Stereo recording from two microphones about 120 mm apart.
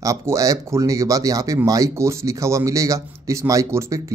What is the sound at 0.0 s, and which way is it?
Speech, 25° right (ahead or behind).